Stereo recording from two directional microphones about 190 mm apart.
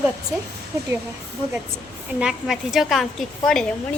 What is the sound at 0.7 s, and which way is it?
Speech, 20° right (ahead or behind).